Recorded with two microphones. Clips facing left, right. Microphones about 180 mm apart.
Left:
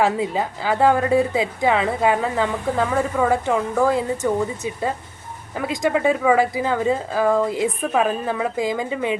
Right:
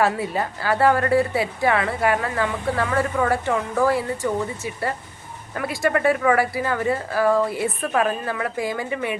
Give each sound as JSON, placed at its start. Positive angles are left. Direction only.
{"t": 0.0, "sound": "speech", "side_deg": 15}